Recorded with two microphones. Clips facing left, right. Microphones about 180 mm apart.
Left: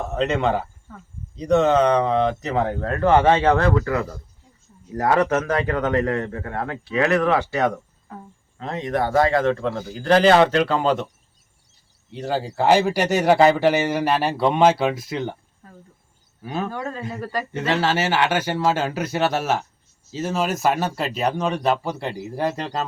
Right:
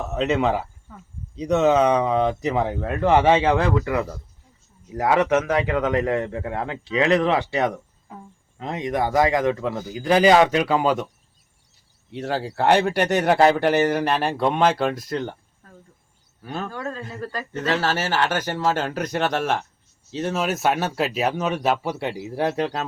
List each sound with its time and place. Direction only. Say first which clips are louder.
0.0 s a man's voice: even; 5° right (ahead or behind)
12.1 s speech: left 1 dB; centre (ahead or behind)
16.4 s a man's voice: left 3 dB; 10° left (ahead or behind)